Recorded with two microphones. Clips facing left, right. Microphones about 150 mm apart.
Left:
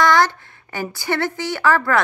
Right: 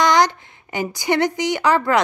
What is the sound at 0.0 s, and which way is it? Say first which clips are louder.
A woman's voice: even; 15° right (ahead or behind).